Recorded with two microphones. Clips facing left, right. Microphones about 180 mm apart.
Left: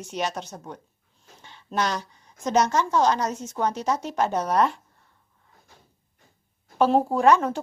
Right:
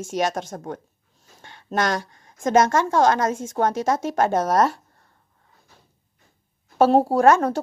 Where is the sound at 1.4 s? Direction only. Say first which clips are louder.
Right 3 dB; 50° right (ahead or behind).